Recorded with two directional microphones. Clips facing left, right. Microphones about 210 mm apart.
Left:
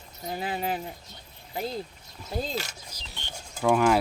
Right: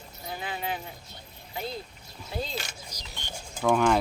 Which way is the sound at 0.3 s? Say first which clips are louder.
Left 4 dB; 40° left (ahead or behind).